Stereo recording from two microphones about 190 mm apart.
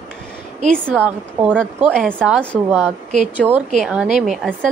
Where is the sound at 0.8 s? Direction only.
10° right (ahead or behind).